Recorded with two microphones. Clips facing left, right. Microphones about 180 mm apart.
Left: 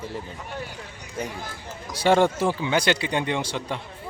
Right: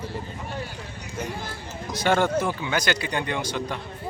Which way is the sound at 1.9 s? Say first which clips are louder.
Left 3 dB; 30° left (ahead or behind).